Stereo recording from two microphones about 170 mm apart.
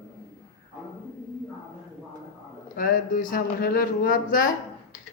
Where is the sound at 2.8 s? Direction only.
55° left (ahead or behind).